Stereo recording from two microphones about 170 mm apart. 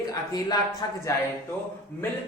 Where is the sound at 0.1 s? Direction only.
20° left (ahead or behind).